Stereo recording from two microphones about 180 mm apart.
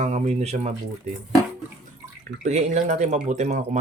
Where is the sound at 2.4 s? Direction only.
40° right (ahead or behind).